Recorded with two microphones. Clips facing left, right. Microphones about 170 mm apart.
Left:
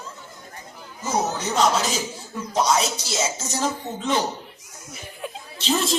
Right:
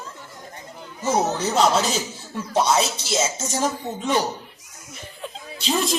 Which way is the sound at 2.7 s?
30° right (ahead or behind).